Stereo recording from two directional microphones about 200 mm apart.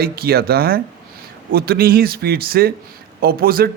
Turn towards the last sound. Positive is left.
turn(degrees=-50)  # may be behind; listen again after turning